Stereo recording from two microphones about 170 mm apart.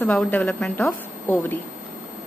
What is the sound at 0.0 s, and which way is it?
A woman's voice, 10° left (ahead or behind).